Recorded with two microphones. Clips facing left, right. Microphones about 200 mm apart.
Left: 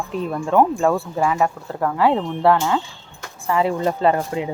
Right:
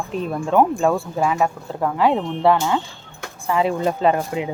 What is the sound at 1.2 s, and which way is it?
Speech, 15° right (ahead or behind).